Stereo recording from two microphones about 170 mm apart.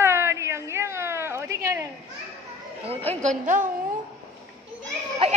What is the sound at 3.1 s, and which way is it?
Speech, 45° right (ahead or behind).